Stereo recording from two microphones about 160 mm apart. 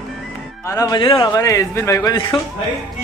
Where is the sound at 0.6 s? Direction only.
20° left (ahead or behind).